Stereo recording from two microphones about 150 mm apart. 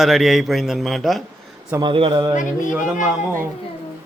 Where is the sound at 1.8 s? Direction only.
30° right (ahead or behind).